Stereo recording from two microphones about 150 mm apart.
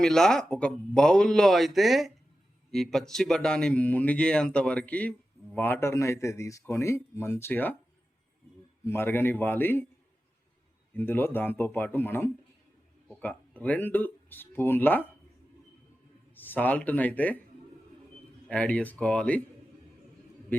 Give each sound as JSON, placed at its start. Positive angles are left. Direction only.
{"t": 0.0, "sound": "speech", "side_deg": 5}
{"t": 8.9, "sound": "speech", "side_deg": 15}
{"t": 10.9, "sound": "speech", "side_deg": 15}
{"t": 13.6, "sound": "speech", "side_deg": 10}
{"t": 16.3, "sound": "speech", "side_deg": 15}
{"t": 18.4, "sound": "speech", "side_deg": 10}
{"t": 20.5, "sound": "a man's voice", "side_deg": 15}